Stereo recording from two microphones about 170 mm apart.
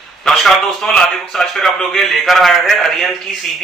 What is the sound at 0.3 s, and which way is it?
Speech, centre (ahead or behind).